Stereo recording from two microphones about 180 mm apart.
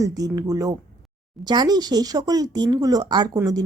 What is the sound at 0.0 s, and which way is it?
Speech, 20° right (ahead or behind).